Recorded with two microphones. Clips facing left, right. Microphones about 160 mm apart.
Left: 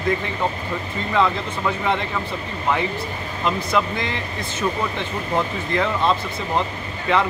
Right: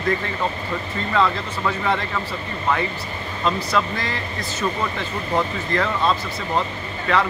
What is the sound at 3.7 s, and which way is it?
Speech, 20° left (ahead or behind).